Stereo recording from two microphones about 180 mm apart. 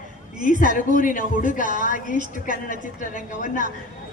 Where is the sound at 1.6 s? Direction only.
45° right (ahead or behind).